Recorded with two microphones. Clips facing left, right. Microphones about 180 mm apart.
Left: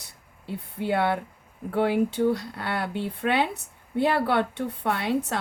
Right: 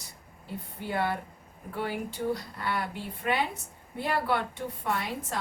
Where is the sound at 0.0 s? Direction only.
70° left (ahead or behind).